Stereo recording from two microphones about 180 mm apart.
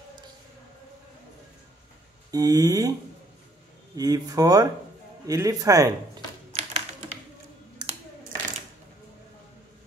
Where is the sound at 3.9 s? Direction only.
20° right (ahead or behind).